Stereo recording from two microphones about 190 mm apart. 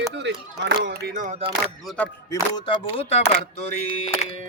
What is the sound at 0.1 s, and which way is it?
Speech, 70° right (ahead or behind).